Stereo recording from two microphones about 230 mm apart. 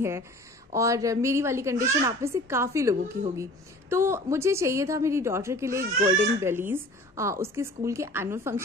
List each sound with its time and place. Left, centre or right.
0.7 s a child's voice: centre